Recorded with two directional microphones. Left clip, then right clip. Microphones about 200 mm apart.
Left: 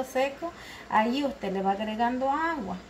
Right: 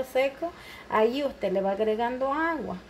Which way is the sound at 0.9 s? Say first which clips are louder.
Right 1 dB; 45° right (ahead or behind).